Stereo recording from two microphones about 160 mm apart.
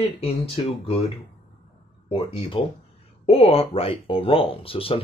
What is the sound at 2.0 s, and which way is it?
Speech, 35° left (ahead or behind).